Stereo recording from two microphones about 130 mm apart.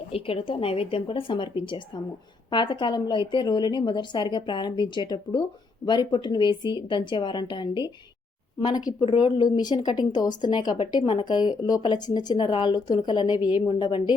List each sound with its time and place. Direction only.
0.1 s a woman's voice: 45° left (ahead or behind)
2.5 s a woman's voice: 35° left (ahead or behind)
9.0 s a woman's voice: 40° left (ahead or behind)